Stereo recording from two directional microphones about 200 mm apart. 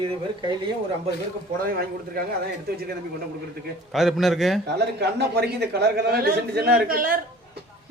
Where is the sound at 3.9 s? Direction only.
Centre (ahead or behind).